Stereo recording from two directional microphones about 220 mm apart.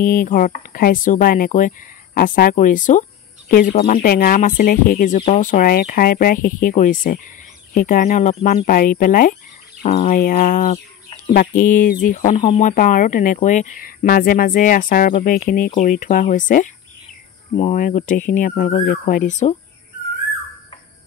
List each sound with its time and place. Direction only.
0.0 s speech: 40° left (ahead or behind)